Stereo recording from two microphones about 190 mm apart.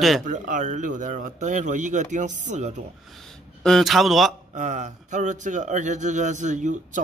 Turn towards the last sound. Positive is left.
turn(degrees=-40)  # may be behind; listen again after turning